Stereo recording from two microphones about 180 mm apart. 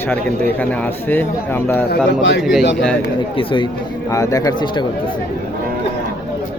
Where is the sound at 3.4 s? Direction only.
30° left (ahead or behind).